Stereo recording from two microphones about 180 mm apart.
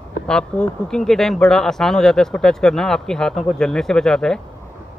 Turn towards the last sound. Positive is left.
turn(degrees=5)  # may be behind; listen again after turning